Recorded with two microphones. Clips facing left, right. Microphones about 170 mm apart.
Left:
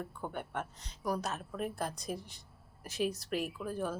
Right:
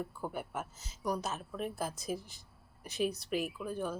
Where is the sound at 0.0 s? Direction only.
5° right (ahead or behind).